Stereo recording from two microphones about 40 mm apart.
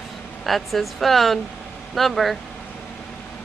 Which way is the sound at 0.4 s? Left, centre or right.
Centre.